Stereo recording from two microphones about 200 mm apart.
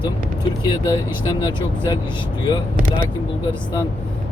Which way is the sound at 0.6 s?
20° left (ahead or behind).